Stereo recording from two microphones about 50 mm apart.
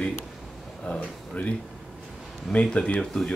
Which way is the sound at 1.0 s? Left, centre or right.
Left.